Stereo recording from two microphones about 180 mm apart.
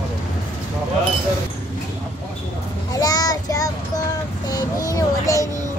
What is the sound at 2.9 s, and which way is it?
Child singing, 20° left (ahead or behind).